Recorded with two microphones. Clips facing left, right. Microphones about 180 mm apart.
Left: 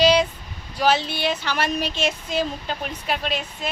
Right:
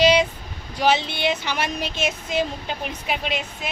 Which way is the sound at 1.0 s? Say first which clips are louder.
Right 1 dB; 15° right (ahead or behind).